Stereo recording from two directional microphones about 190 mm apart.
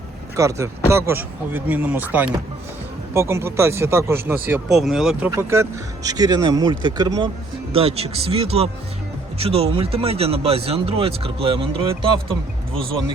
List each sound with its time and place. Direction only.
0.3 s speech: 15° right (ahead or behind)
5.3 s speech: 15° right (ahead or behind)